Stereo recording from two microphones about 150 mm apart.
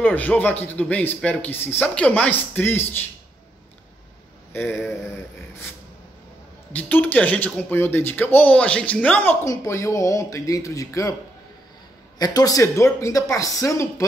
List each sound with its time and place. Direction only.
0.0 s speech: 10° left (ahead or behind)
4.5 s speech: 15° left (ahead or behind)
6.7 s speech: 10° left (ahead or behind)
12.2 s speech: 25° left (ahead or behind)